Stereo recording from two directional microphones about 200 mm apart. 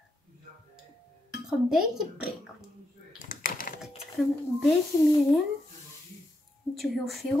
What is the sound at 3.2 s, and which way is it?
Typing, 40° left (ahead or behind).